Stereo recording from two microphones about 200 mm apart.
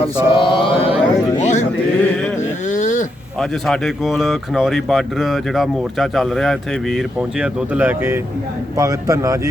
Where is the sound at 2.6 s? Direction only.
40° left (ahead or behind).